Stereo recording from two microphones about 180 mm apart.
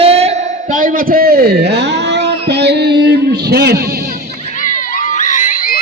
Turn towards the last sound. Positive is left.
turn(degrees=50)  # may be behind; listen again after turning